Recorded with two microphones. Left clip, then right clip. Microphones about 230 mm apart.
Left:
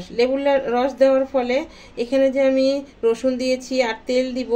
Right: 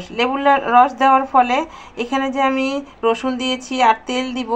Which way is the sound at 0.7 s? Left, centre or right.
Right.